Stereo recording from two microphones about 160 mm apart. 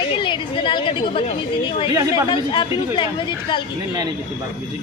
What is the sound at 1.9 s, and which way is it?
Speech, 25° right (ahead or behind).